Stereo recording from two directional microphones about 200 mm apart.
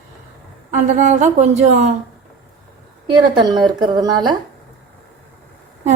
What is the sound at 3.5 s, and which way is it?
Speech, 20° right (ahead or behind).